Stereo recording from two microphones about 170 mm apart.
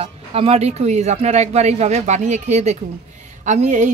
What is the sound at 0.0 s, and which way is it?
A man's voice, 35° right (ahead or behind).